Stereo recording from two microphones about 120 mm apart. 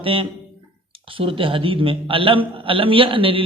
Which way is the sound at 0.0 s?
50° right (ahead or behind).